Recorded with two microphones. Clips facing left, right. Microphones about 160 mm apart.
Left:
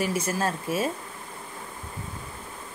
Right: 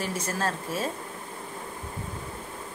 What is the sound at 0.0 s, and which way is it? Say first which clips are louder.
Speech: left 3 dB; 10° left (ahead or behind).